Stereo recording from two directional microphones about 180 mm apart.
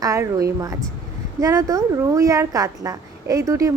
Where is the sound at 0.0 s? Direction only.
15° right (ahead or behind).